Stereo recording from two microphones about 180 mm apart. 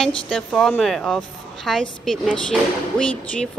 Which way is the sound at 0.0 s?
5° left (ahead or behind).